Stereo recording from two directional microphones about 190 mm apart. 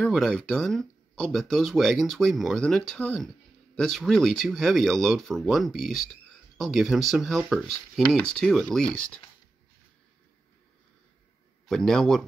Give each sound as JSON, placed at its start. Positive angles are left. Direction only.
{"t": 0.0, "sound": "speech", "side_deg": 5}
{"t": 11.7, "sound": "speech", "side_deg": 5}